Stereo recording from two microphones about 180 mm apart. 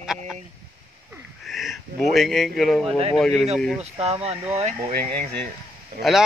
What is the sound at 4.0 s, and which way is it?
Speech, 35° right (ahead or behind).